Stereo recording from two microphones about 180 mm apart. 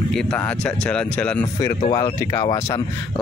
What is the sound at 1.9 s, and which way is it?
Speech, 20° left (ahead or behind).